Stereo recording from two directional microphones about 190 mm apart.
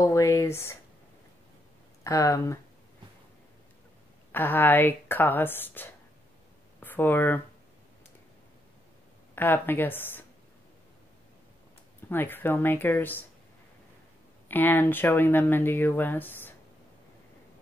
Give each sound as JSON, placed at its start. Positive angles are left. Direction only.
{"t": 0.0, "sound": "speech", "side_deg": 15}
{"t": 2.0, "sound": "speech", "side_deg": 15}
{"t": 4.3, "sound": "speech", "side_deg": 10}
{"t": 9.3, "sound": "speech", "side_deg": 10}
{"t": 12.1, "sound": "speech", "side_deg": 10}
{"t": 14.5, "sound": "speech", "side_deg": 10}